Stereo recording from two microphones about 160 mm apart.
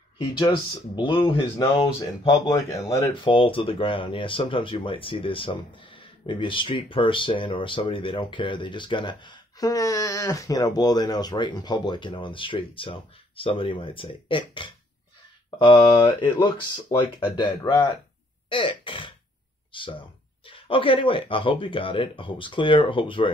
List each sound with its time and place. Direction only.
0.2 s speech: 30° left (ahead or behind)
2.3 s speech: 20° left (ahead or behind)
3.3 s speech: 35° left (ahead or behind)
17.4 s speech: 25° left (ahead or behind)